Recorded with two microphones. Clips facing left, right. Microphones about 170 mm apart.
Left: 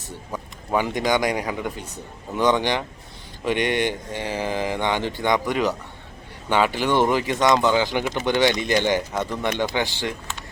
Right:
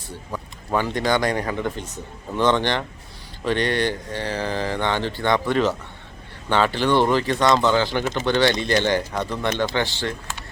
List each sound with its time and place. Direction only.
0.3 s speech: 15° left (ahead or behind)